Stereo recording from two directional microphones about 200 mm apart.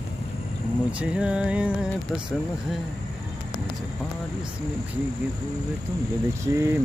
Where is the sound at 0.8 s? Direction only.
5° right (ahead or behind).